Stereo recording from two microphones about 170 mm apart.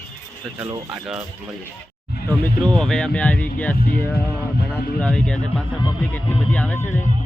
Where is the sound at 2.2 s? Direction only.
5° left (ahead or behind).